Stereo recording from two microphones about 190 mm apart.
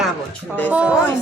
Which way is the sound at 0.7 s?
5° right (ahead or behind).